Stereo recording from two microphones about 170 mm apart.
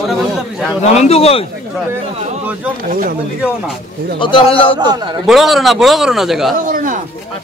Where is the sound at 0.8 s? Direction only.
40° left (ahead or behind).